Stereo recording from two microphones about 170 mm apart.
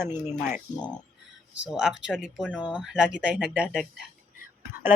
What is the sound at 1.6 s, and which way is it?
Speech, 5° right (ahead or behind).